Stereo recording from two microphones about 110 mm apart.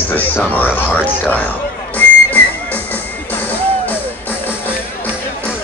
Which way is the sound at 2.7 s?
15° left (ahead or behind).